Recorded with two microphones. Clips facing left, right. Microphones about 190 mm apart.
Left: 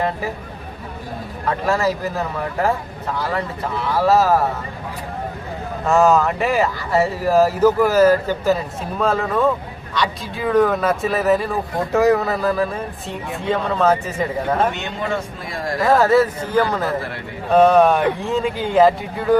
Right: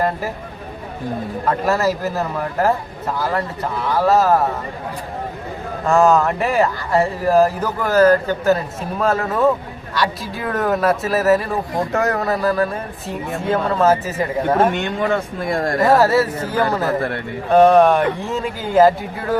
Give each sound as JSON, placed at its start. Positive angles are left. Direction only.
{"t": 1.6, "sound": "speech", "side_deg": -5}
{"t": 3.8, "sound": "speech", "side_deg": 0}
{"t": 5.8, "sound": "speech", "side_deg": 0}
{"t": 14.7, "sound": "speech", "side_deg": -55}
{"t": 15.8, "sound": "speech", "side_deg": -5}
{"t": 17.5, "sound": "speech", "side_deg": 0}